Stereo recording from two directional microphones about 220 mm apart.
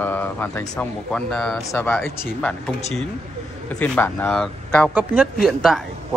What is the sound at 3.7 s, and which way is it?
Speech, 5° left (ahead or behind).